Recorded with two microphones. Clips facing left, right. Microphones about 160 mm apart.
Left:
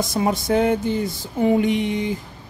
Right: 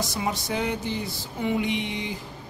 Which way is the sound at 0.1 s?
50° left (ahead or behind).